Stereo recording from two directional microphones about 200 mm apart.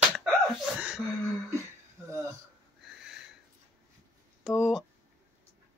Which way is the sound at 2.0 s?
15° right (ahead or behind).